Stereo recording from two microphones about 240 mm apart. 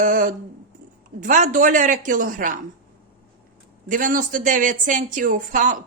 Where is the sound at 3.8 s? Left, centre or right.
Right.